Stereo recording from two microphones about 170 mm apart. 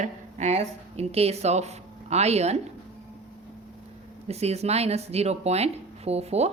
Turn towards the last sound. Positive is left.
turn(degrees=-40)  # may be behind; listen again after turning